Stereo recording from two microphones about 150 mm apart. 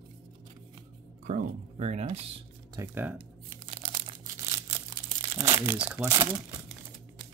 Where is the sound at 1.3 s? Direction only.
55° right (ahead or behind).